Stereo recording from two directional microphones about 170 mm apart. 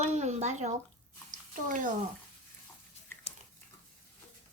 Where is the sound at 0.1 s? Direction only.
40° right (ahead or behind).